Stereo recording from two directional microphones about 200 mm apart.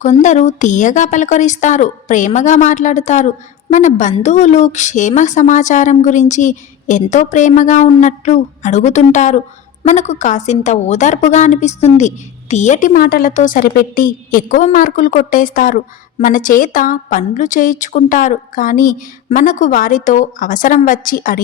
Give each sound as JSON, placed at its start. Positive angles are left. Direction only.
{"t": 0.0, "sound": "a woman's voice", "side_deg": 35}